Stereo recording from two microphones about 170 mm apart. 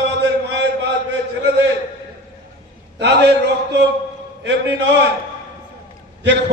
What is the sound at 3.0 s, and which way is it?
Speech, 85° right.